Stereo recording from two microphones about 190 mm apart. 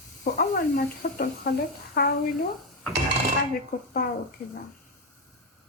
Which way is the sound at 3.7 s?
50° left (ahead or behind).